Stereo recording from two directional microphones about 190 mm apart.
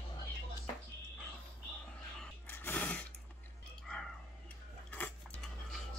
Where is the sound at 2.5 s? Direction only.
10° left (ahead or behind).